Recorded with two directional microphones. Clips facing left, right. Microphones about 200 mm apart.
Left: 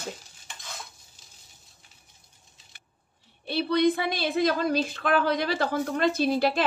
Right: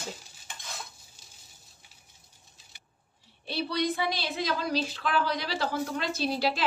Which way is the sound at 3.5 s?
55° left (ahead or behind).